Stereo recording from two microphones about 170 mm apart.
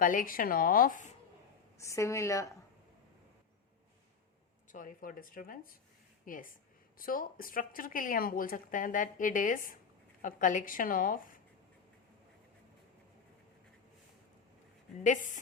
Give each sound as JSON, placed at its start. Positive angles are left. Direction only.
{"t": 0.0, "sound": "a woman's voice", "side_deg": 55}
{"t": 1.8, "sound": "a woman's voice", "side_deg": 15}
{"t": 4.7, "sound": "a woman's voice", "side_deg": 50}
{"t": 15.0, "sound": "speech", "side_deg": 50}